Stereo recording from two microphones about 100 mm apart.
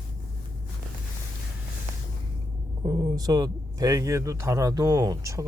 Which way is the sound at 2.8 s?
45° right (ahead or behind).